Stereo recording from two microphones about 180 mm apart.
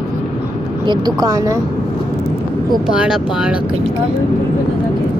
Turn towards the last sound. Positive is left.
turn(degrees=-5)  # may be behind; listen again after turning